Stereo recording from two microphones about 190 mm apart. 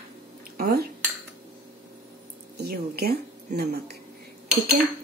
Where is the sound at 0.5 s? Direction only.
55° right (ahead or behind).